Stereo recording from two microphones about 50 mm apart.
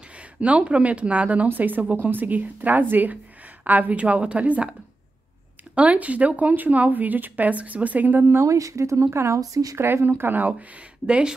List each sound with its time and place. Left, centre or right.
0.1 s a woman's voice: right
5.8 s speech: right
8.4 s speech: right
10.0 s speech: right